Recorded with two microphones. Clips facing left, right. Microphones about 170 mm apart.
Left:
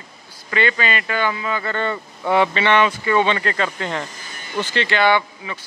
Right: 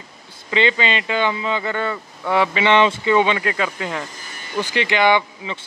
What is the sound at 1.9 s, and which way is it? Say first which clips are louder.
Speech: left 2 dB; centre (ahead or behind).